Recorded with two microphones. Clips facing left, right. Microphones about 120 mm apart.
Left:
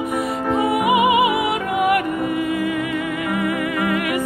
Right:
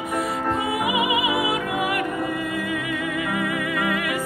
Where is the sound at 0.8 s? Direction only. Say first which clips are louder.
Left 8 dB; 60° left (ahead or behind).